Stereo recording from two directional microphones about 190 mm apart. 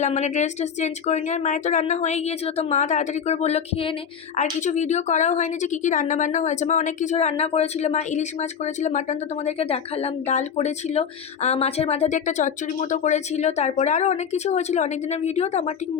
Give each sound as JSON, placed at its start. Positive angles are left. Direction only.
{"t": 0.0, "sound": "a woman's voice", "side_deg": 40}